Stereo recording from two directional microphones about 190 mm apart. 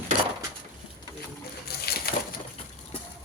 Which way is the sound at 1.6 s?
55° left (ahead or behind).